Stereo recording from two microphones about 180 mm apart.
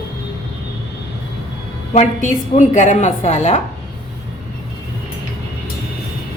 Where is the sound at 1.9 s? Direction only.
45° left (ahead or behind).